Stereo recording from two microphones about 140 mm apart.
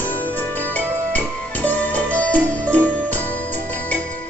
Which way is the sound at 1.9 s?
10° left (ahead or behind).